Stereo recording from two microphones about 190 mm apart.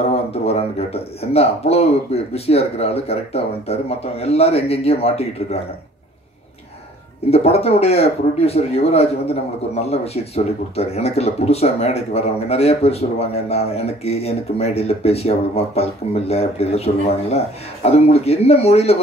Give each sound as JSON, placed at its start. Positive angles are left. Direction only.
{"t": 0.1, "sound": "speech", "side_deg": 35}
{"t": 7.2, "sound": "speech", "side_deg": 30}